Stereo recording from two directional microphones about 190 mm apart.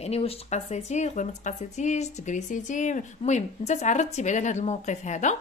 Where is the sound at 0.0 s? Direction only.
30° left (ahead or behind).